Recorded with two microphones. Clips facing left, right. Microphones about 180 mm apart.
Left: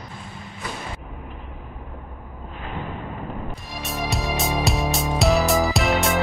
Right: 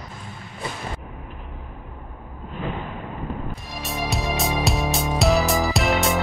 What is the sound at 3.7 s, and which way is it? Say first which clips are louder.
Music: even; centre (ahead or behind).